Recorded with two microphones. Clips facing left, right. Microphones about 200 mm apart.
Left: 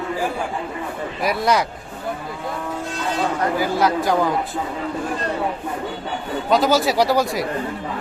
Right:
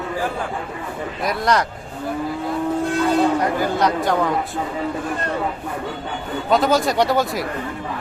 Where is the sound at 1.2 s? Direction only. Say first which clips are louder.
Left 1 dB; 5° left (ahead or behind).